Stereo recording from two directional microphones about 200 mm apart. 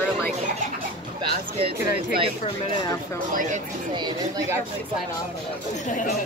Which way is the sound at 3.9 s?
20° right (ahead or behind).